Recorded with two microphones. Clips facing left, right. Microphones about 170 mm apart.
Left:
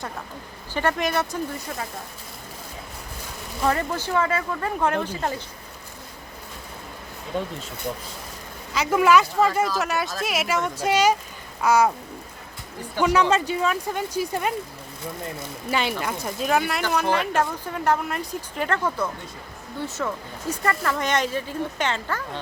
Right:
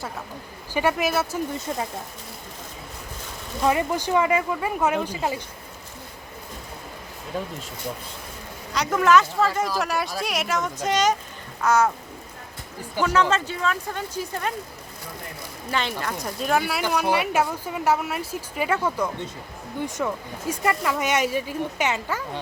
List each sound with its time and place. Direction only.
0.7 s speech: 10° right (ahead or behind)
1.5 s speech: 25° right (ahead or behind)
3.7 s speech: 15° right (ahead or behind)
7.3 s speech: 5° right (ahead or behind)
8.7 s speech: 5° left (ahead or behind)
13.0 s speech: 15° left (ahead or behind)
15.7 s speech: 10° left (ahead or behind)
16.2 s speech: centre (ahead or behind)